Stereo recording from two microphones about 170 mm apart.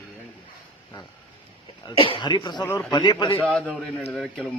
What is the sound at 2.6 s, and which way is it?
Speech, 10° left (ahead or behind).